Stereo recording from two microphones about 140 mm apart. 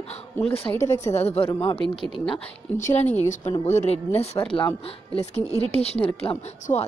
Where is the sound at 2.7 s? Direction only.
60° left (ahead or behind).